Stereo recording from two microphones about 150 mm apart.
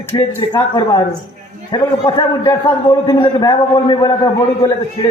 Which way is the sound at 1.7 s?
25° left (ahead or behind).